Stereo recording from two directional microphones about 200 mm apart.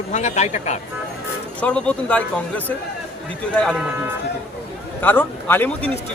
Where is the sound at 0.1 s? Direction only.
35° left (ahead or behind).